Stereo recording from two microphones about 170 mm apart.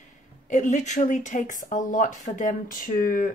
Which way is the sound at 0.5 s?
45° left (ahead or behind).